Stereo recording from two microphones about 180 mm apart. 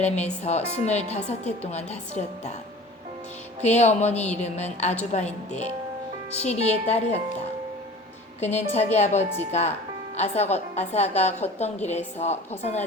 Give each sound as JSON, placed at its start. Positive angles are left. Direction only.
{"t": 0.0, "sound": "a woman's voice", "side_deg": 40}
{"t": 3.6, "sound": "a woman's voice", "side_deg": 40}
{"t": 8.4, "sound": "a woman's voice", "side_deg": 40}